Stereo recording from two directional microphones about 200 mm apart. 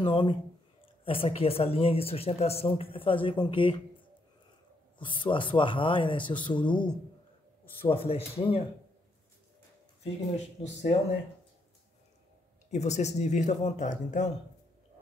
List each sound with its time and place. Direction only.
0.0 s speech: 25° left (ahead or behind)
4.9 s speech: 25° left (ahead or behind)
10.3 s speech: 35° left (ahead or behind)
12.7 s speech: 35° left (ahead or behind)